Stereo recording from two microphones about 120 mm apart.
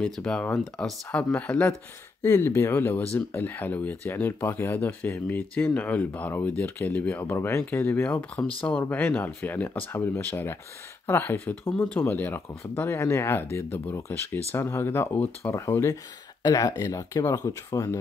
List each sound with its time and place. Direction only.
0.0 s speech: 10° left (ahead or behind); by 17.9 s 30° left (ahead or behind)